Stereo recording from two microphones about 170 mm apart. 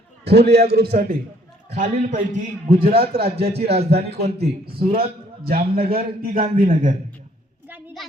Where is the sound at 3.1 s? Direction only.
70° right (ahead or behind).